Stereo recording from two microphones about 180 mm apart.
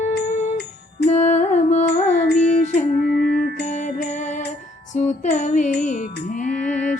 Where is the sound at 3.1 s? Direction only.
60° left (ahead or behind).